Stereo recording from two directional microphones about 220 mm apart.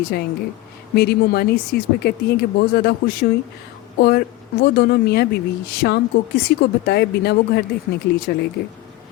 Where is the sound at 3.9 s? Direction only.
45° left (ahead or behind).